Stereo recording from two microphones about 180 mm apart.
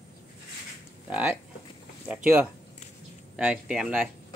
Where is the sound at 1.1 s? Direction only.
5° right (ahead or behind).